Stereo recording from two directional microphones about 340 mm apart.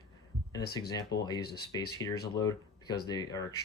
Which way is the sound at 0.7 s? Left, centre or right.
Centre.